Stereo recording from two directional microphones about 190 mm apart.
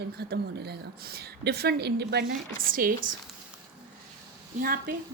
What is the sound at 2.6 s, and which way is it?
Speech, 45° right (ahead or behind).